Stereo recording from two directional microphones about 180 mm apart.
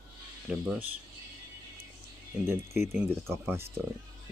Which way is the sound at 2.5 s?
10° right (ahead or behind).